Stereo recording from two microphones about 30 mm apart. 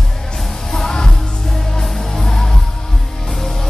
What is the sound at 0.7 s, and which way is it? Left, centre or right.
Music, centre.